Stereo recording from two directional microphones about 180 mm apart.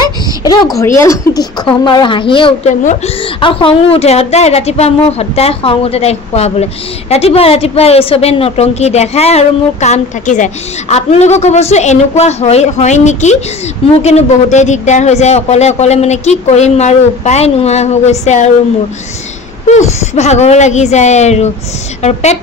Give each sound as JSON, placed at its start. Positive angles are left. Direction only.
{"t": 0.0, "sound": "a sound", "side_deg": 20}
{"t": 0.7, "sound": "a woman's voice", "side_deg": 15}
{"t": 19.7, "sound": "a woman's voice", "side_deg": 40}